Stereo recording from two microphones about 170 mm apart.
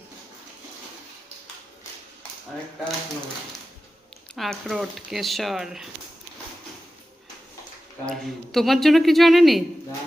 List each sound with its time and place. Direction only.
4.4 s speech: centre (ahead or behind)
8.0 s speech: centre (ahead or behind)